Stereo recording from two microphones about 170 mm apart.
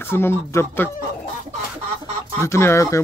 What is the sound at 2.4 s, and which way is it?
Speech, 15° left (ahead or behind).